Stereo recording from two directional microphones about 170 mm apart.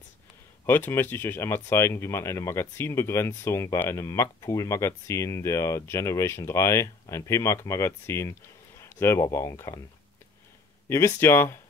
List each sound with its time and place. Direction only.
0.7 s speech: 15° left (ahead or behind)
10.9 s speech: 15° left (ahead or behind)